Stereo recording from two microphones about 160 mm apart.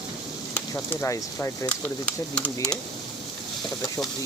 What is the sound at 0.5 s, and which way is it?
Speech, 20° left (ahead or behind).